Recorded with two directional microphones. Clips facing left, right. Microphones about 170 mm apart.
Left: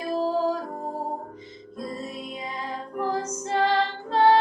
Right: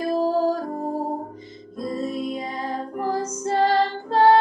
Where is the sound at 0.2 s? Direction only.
40° right (ahead or behind).